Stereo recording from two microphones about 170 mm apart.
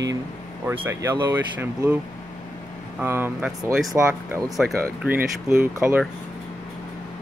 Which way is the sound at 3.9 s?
20° right (ahead or behind).